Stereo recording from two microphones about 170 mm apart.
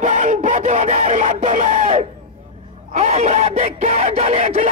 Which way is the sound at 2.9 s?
40° right (ahead or behind).